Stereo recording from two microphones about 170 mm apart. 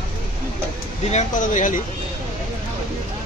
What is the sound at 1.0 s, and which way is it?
Speech, 45° left (ahead or behind).